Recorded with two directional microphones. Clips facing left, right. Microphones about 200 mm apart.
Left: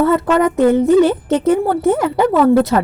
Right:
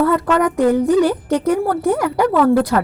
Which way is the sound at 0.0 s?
25° left (ahead or behind).